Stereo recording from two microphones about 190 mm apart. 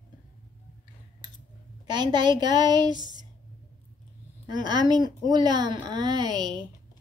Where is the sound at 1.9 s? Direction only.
25° right (ahead or behind).